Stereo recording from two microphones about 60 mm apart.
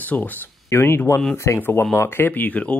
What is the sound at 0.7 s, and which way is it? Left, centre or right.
Speech, left.